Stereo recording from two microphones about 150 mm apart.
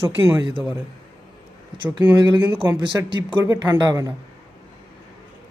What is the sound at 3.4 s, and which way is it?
Speech, 15° right (ahead or behind).